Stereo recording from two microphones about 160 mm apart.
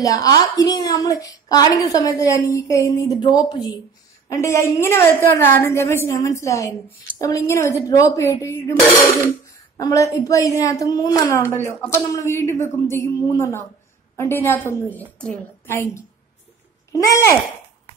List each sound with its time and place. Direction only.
0.0 s a woman's voice: 20° left (ahead or behind)
9.8 s a woman's voice: 20° left (ahead or behind)